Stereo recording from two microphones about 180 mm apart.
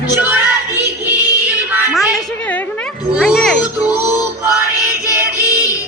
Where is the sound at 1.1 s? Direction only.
10° right (ahead or behind).